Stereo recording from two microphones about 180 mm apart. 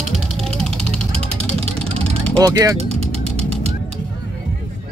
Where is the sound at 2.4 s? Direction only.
20° right (ahead or behind).